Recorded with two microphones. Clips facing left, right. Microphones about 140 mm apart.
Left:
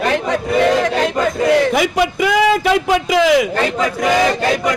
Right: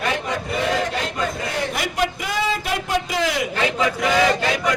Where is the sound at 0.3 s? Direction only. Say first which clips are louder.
Left 8 dB; 80° left.